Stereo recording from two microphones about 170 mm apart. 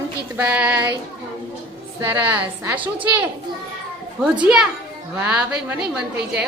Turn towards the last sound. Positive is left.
turn(degrees=-5)  # may be behind; listen again after turning